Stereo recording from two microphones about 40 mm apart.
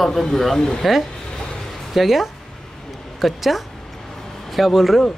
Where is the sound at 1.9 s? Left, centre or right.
Centre.